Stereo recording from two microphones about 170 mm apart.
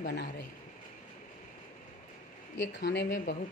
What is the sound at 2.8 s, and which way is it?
Speech, 90° left.